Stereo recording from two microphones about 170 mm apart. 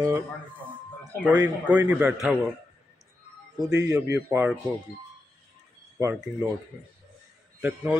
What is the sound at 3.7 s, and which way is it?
Speech, 20° right (ahead or behind).